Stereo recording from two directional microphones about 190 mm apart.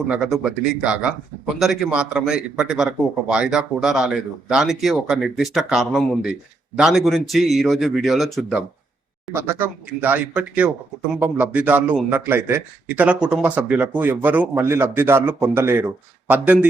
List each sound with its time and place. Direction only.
0.1 s a man's voice: centre (ahead or behind)
9.3 s a man's voice: 15° right (ahead or behind)